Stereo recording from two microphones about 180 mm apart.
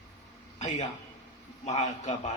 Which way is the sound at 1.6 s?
40° left (ahead or behind).